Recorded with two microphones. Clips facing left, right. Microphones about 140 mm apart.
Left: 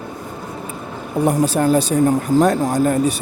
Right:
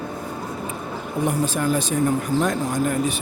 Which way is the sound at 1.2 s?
40° left (ahead or behind).